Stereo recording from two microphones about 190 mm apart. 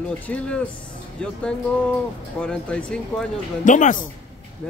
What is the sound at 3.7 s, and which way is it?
Speech, 45° left (ahead or behind).